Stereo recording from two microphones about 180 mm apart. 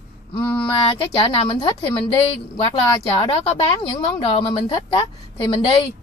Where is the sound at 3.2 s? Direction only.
30° left (ahead or behind).